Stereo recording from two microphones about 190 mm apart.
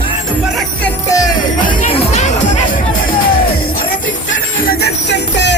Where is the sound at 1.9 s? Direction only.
40° left (ahead or behind).